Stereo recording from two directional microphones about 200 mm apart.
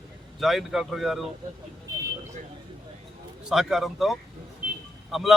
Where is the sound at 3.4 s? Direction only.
Centre (ahead or behind).